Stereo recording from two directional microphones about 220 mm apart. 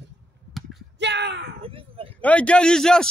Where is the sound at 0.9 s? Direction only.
50° right (ahead or behind).